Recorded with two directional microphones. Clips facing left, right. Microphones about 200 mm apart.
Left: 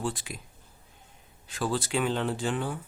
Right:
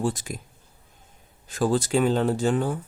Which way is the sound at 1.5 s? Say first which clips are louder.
Right 7 dB; 45° right (ahead or behind).